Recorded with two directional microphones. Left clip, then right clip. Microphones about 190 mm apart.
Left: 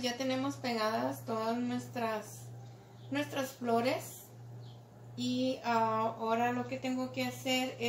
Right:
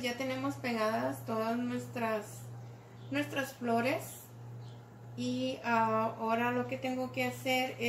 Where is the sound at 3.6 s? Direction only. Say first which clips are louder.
Left 1 dB; 15° left (ahead or behind).